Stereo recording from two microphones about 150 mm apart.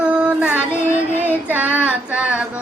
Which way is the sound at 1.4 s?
10° right (ahead or behind).